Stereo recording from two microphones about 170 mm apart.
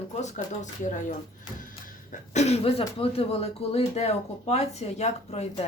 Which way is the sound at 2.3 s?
40° left (ahead or behind).